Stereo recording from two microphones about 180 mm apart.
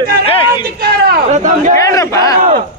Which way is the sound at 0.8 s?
60° right (ahead or behind).